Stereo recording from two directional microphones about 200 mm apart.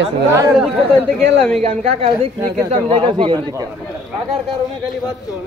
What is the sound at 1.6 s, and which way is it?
A man's voice, 35° right (ahead or behind).